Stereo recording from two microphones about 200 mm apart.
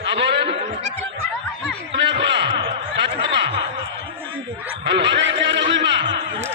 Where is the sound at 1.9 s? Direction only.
60° right (ahead or behind).